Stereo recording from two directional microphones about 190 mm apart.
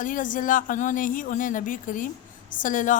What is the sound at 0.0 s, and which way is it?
A woman's voice, 45° left (ahead or behind).